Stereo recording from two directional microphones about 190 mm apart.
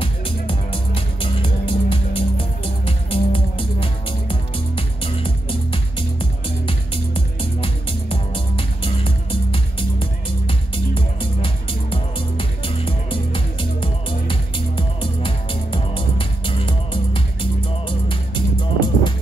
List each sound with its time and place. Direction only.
0.0 s music: 30° left (ahead or behind)